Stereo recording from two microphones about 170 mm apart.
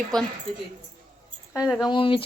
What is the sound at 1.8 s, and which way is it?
Speech, 30° left (ahead or behind).